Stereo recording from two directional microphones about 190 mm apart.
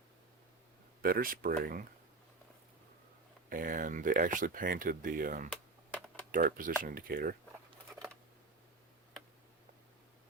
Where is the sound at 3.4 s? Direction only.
45° right (ahead or behind).